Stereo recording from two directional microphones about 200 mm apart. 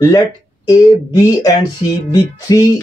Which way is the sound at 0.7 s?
15° left (ahead or behind).